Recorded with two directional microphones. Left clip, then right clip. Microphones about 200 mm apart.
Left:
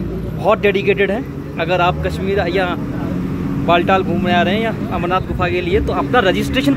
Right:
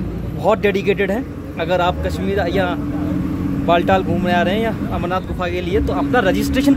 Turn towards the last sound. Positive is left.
turn(degrees=-10)  # may be behind; listen again after turning